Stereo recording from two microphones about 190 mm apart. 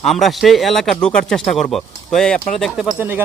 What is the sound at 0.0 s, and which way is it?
A man's voice, centre (ahead or behind).